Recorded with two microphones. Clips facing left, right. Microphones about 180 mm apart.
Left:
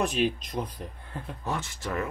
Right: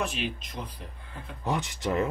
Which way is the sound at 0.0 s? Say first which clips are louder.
Left 6 dB; 40° left (ahead or behind).